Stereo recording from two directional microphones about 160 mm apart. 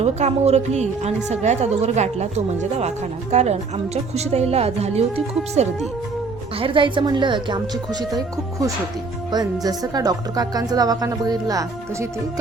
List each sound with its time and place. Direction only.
0.0 s a woman's voice: 40° right (ahead or behind)
6.6 s a woman's voice: 30° right (ahead or behind)
9.3 s a woman's voice: 25° right (ahead or behind)